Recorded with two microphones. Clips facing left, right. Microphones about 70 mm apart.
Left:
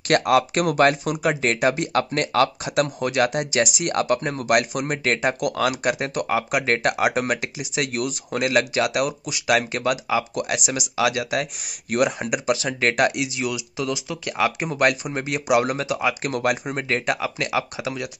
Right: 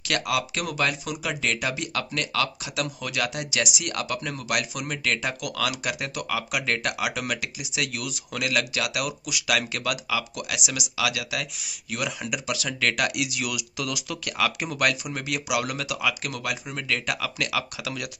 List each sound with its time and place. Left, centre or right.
0.1 s speech: left